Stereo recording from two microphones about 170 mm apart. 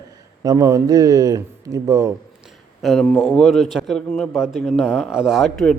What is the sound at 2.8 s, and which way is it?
A man's voice, centre (ahead or behind).